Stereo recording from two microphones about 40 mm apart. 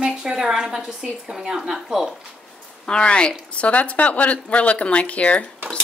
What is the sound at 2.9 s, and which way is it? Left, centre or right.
Speech, left.